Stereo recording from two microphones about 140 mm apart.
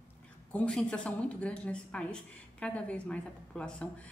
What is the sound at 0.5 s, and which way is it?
A woman's voice, 5° left (ahead or behind).